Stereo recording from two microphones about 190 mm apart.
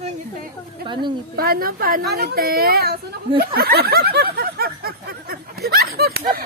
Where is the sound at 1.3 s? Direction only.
50° right (ahead or behind).